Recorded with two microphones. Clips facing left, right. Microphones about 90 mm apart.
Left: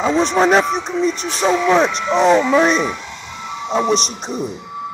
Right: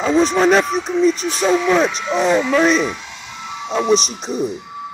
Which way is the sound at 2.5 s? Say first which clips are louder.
Left 1 dB; 15° left (ahead or behind).